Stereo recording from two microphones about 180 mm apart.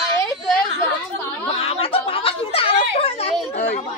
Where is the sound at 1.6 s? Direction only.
30° left (ahead or behind).